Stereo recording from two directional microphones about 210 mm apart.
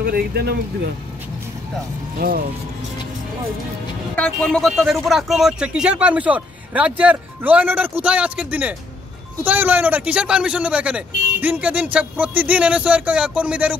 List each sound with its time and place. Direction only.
0.0 s speech: 50° right (ahead or behind)
2.1 s speech: 45° right (ahead or behind)
4.1 s speech: 5° left (ahead or behind)